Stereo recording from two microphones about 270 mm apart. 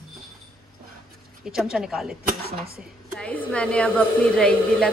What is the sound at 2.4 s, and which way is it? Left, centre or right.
Speech, right.